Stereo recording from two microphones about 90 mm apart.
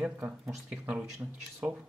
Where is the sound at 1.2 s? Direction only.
25° right (ahead or behind).